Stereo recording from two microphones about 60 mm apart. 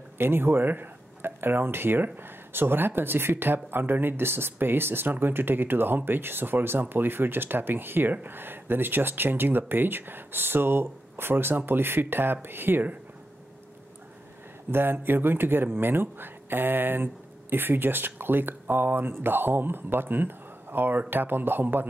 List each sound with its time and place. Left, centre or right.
0.2 s speech: right
14.7 s speech: right